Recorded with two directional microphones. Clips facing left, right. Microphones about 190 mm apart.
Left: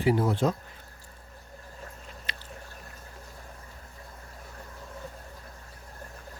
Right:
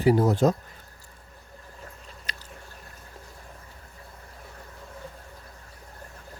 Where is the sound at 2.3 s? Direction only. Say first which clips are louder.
Right 1 dB; 40° right (ahead or behind).